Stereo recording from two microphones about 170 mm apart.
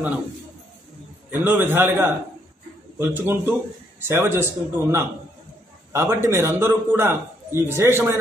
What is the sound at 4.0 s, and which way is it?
A man's voice, 15° right (ahead or behind).